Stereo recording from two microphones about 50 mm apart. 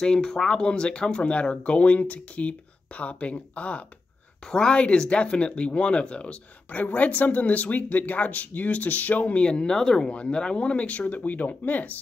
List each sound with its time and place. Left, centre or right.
0.0 s speech: centre
4.5 s speech: centre; by 12.0 s left